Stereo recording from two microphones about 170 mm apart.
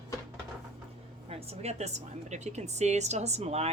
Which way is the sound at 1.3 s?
40° right (ahead or behind).